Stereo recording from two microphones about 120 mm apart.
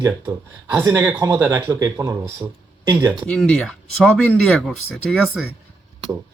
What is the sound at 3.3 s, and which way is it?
Speech, 5° left (ahead or behind).